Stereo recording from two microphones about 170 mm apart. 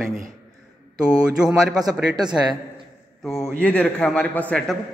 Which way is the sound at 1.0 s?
5° right (ahead or behind).